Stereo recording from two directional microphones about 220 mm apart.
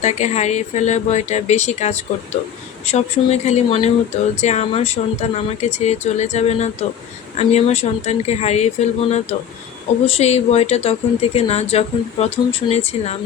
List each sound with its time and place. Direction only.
0.0 s speech: 30° left (ahead or behind)